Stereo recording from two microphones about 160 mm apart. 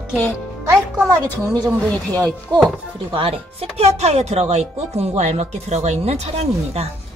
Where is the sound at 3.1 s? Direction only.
35° right (ahead or behind).